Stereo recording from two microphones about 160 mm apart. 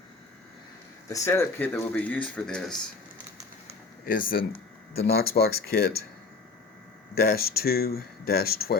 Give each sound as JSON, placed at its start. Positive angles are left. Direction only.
{"t": 1.1, "sound": "speech", "side_deg": 15}
{"t": 4.0, "sound": "speech", "side_deg": 65}
{"t": 5.1, "sound": "speech", "side_deg": 75}
{"t": 7.2, "sound": "speech", "side_deg": 70}